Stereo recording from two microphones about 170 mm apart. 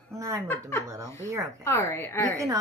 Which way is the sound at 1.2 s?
15° right (ahead or behind).